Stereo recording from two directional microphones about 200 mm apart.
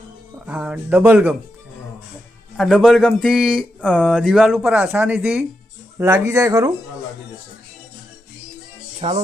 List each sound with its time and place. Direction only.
0.4 s speech: 5° right (ahead or behind)
2.6 s speech: centre (ahead or behind); by 6.7 s 20° right (ahead or behind)
9.0 s music: 30° right (ahead or behind)